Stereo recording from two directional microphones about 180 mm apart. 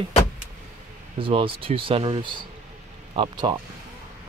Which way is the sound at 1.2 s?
30° right (ahead or behind).